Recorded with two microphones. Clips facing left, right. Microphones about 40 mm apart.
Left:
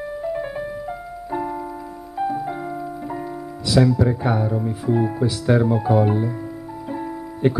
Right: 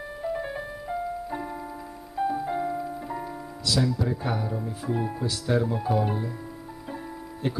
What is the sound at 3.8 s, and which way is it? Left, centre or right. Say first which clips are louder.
Speech: left 8 dB; left.